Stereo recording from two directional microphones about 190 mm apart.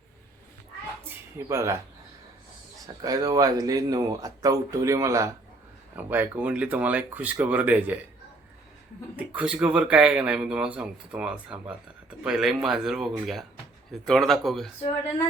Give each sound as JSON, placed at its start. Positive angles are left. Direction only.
{"t": 1.5, "sound": "speech", "side_deg": -15}
{"t": 2.8, "sound": "speech", "side_deg": -20}
{"t": 9.1, "sound": "speech", "side_deg": -5}